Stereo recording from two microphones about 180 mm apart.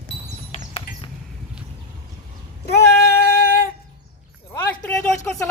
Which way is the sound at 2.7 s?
65° left (ahead or behind).